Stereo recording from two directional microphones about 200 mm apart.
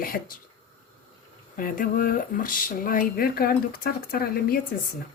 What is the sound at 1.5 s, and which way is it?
Speech, 45° left (ahead or behind).